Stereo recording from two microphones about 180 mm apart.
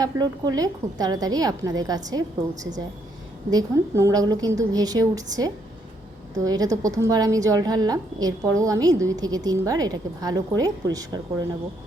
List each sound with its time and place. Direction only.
0.0 s a woman's voice: 20° right (ahead or behind)